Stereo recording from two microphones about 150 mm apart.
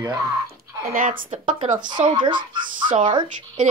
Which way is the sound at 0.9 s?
65° right (ahead or behind).